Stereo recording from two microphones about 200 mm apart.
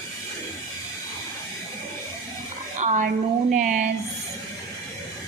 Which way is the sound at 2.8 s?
35° right (ahead or behind).